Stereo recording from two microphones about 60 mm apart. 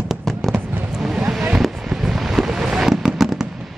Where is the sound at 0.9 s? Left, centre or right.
Centre.